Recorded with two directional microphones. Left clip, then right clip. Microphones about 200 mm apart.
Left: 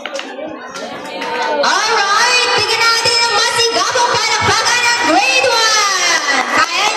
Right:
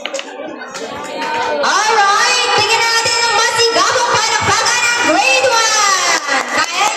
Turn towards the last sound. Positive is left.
turn(degrees=25)  # may be behind; listen again after turning